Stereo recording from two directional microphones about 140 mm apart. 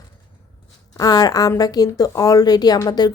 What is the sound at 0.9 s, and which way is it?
A woman's voice, 25° left (ahead or behind).